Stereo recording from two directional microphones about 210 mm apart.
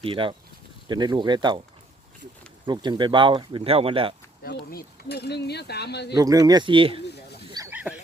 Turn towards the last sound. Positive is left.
turn(degrees=-5)  # may be behind; listen again after turning